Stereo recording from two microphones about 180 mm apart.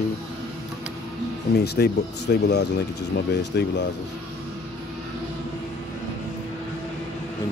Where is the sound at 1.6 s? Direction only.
65° left (ahead or behind).